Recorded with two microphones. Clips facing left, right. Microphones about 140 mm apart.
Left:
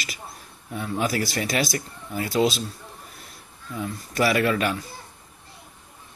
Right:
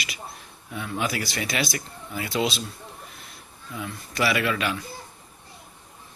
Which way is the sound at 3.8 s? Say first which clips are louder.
Left 3 dB; 40° left (ahead or behind).